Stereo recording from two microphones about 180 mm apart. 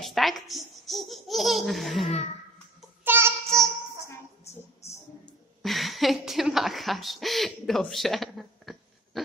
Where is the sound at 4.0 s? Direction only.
15° left (ahead or behind).